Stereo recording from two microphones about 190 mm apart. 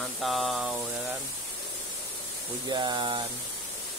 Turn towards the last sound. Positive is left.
turn(degrees=-25)  # may be behind; listen again after turning